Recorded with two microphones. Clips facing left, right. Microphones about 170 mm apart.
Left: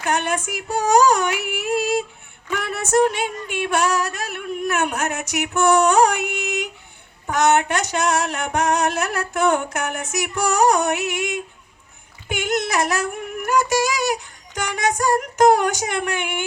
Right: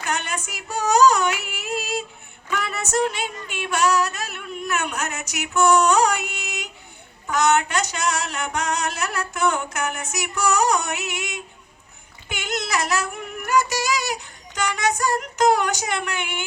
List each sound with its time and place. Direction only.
0.0 s child singing: 55° left (ahead or behind)
0.9 s a sound: 55° left (ahead or behind)
2.5 s female singing: 55° left (ahead or behind)
12.3 s child singing: 50° left (ahead or behind)